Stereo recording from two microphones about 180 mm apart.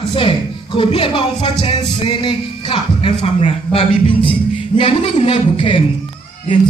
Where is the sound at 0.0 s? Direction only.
30° left (ahead or behind).